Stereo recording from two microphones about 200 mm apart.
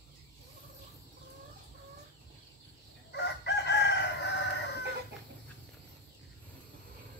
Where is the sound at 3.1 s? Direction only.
60° left (ahead or behind).